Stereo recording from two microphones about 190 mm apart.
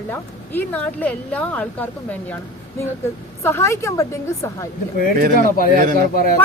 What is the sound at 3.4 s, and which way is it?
Speech, 15° left (ahead or behind).